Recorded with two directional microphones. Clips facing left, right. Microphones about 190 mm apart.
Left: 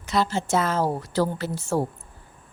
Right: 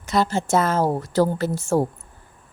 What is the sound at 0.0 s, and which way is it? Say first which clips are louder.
Speech: right 3 dB; 50° right (ahead or behind).